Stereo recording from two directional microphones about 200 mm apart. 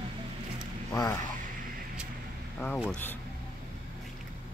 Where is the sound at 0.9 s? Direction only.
15° left (ahead or behind).